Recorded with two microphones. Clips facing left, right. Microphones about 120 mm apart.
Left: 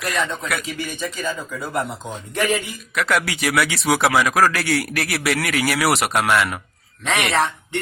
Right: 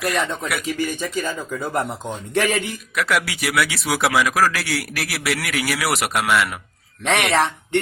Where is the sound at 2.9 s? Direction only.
5° right (ahead or behind).